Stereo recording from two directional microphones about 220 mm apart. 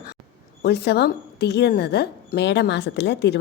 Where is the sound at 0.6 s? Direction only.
50° left (ahead or behind).